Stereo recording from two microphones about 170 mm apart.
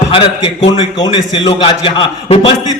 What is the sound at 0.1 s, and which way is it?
A man's voice, 30° left (ahead or behind).